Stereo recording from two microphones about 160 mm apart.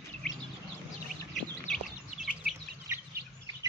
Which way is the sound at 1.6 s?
5° left (ahead or behind).